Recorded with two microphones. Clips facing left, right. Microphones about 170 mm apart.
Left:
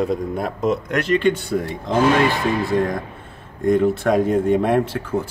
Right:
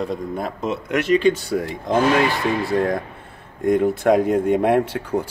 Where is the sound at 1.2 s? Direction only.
60° left (ahead or behind).